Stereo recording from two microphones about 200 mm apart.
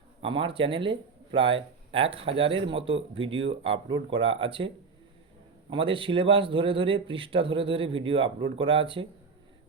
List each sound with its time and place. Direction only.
0.2 s speech: 25° right (ahead or behind)
5.7 s speech: 25° right (ahead or behind)